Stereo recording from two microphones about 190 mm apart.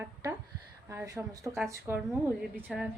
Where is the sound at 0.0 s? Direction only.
10° right (ahead or behind).